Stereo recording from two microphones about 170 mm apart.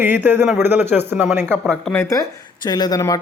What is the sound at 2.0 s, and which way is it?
Speech, 20° left (ahead or behind).